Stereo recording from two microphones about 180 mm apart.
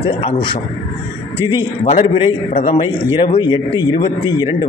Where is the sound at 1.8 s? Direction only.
35° left (ahead or behind).